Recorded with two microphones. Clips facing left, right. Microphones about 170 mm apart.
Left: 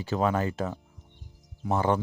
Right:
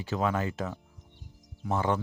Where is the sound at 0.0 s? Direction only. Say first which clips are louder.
Left 3 dB; 35° left (ahead or behind).